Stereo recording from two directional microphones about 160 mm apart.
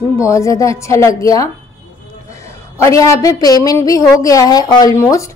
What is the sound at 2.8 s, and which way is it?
A woman's voice, 20° left (ahead or behind).